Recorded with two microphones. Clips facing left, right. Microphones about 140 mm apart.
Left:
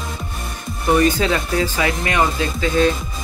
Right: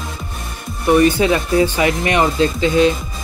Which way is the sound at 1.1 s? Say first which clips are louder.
Right 4 dB; 20° right (ahead or behind).